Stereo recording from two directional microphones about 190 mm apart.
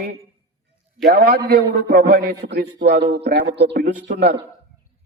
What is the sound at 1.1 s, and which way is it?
A man's voice, 55° right (ahead or behind).